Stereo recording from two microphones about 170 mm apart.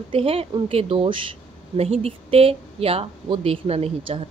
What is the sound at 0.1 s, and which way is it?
Speech, 35° right (ahead or behind).